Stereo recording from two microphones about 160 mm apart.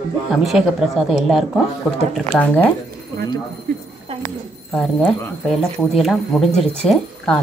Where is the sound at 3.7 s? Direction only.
70° right (ahead or behind).